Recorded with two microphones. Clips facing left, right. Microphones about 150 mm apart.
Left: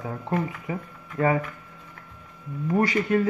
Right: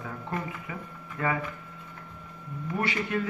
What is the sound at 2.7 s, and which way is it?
Speech, 35° left (ahead or behind).